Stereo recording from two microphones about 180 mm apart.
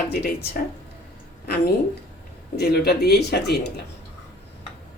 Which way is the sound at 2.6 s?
65° left (ahead or behind).